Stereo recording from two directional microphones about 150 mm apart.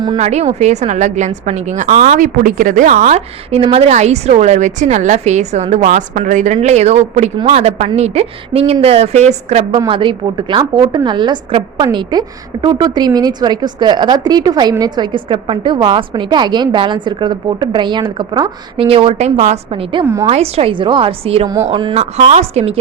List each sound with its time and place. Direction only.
0.2 s a woman's voice: 50° right (ahead or behind)
9.8 s a woman's voice: 35° right (ahead or behind)
21.4 s a woman's voice: 20° right (ahead or behind)
21.7 s a woman's voice: 35° right (ahead or behind)